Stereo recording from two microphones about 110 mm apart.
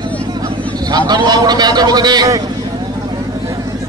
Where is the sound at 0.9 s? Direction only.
40° right (ahead or behind).